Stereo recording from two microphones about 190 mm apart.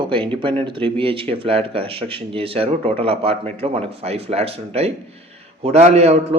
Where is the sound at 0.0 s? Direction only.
25° right (ahead or behind).